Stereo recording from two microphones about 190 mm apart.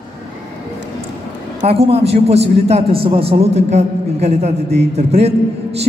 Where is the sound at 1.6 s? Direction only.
30° right (ahead or behind).